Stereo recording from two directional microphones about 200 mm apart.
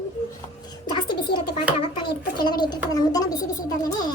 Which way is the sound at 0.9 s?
20° left (ahead or behind).